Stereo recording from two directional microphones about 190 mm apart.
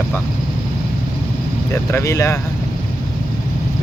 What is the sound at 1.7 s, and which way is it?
Speech, 15° left (ahead or behind).